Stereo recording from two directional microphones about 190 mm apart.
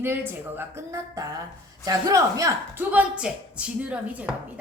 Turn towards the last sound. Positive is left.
turn(degrees=-5)  # may be behind; listen again after turning